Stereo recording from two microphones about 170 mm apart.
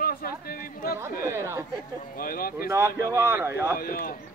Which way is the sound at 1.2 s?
15° right (ahead or behind).